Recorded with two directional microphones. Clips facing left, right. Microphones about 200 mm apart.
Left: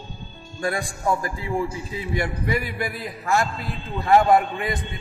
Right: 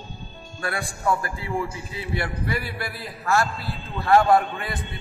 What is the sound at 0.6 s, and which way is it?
A man's voice, 15° left (ahead or behind).